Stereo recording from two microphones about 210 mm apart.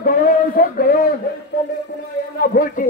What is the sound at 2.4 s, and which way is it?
Speech, 40° left (ahead or behind).